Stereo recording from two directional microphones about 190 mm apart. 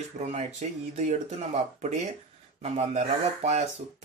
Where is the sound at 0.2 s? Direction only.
35° right (ahead or behind).